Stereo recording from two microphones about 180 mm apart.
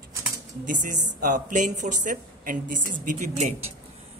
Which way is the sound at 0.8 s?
45° right (ahead or behind).